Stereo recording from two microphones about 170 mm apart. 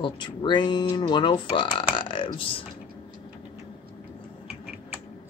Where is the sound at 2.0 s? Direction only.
30° left (ahead or behind).